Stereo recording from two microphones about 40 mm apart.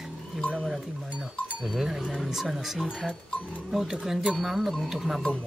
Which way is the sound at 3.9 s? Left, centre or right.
Centre.